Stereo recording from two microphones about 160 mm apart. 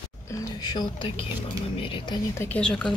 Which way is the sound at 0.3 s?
25° left (ahead or behind).